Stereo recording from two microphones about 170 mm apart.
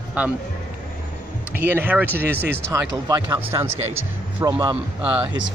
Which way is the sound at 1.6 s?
10° right (ahead or behind).